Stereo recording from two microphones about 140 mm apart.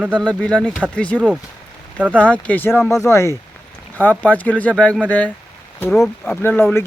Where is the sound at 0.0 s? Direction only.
10° right (ahead or behind).